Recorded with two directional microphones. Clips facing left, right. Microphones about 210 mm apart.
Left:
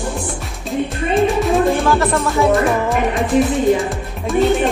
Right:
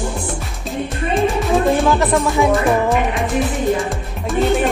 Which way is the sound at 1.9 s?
20° right (ahead or behind).